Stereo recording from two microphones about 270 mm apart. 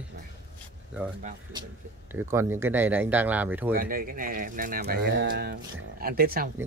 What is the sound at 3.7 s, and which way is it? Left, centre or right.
Speech, right.